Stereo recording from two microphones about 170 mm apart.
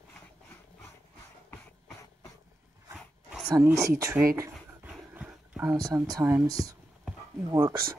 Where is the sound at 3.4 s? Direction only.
20° right (ahead or behind).